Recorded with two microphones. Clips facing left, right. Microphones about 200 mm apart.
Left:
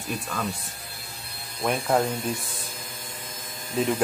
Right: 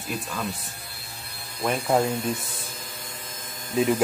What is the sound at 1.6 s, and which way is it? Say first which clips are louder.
Speech: right 1 dB; centre (ahead or behind).